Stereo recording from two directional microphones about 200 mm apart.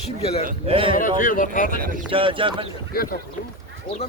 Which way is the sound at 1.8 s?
45° right (ahead or behind).